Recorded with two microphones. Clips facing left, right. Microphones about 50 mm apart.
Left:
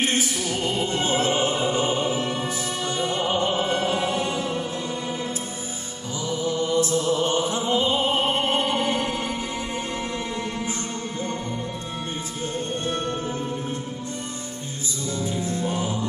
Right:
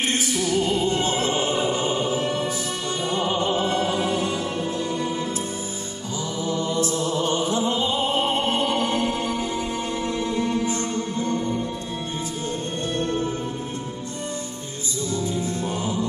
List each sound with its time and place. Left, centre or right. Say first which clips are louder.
0.7 s music: right 2 dB; left
3.3 s music: right 1 dB; left